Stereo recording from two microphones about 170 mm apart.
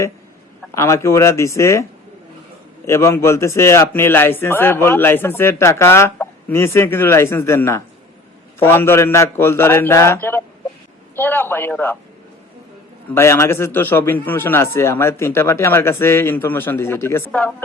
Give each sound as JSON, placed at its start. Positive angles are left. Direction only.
{"t": 0.7, "sound": "speech", "side_deg": 15}
{"t": 13.1, "sound": "speech", "side_deg": 15}